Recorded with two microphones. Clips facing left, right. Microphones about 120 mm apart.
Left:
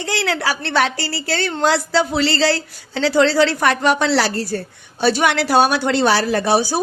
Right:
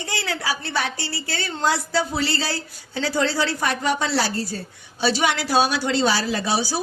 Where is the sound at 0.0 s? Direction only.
80° left.